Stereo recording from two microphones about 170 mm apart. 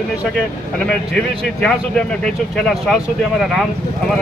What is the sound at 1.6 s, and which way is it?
Speech, 5° left (ahead or behind).